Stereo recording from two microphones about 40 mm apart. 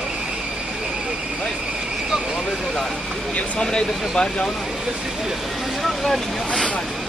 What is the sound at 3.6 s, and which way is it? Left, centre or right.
Speech, centre.